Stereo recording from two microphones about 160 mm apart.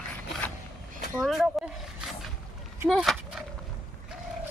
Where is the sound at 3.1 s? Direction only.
Centre (ahead or behind).